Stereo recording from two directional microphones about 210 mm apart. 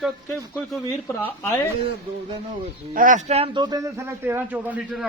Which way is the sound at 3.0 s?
35° right (ahead or behind).